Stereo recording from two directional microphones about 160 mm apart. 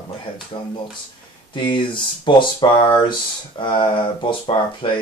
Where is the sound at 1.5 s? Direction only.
30° left (ahead or behind).